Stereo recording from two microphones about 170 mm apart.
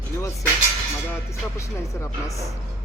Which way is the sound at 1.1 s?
15° left (ahead or behind).